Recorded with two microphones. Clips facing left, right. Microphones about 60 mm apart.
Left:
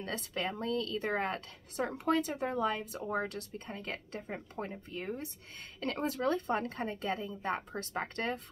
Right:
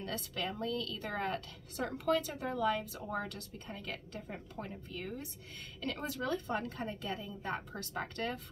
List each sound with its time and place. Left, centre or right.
0.0 s a woman's voice: left